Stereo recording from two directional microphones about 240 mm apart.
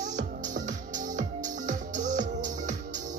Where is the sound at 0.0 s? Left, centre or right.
Right.